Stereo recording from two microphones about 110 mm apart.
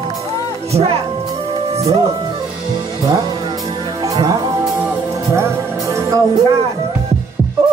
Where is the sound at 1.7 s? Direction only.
65° right (ahead or behind).